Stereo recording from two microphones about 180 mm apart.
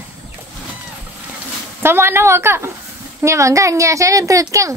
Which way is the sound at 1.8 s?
15° right (ahead or behind).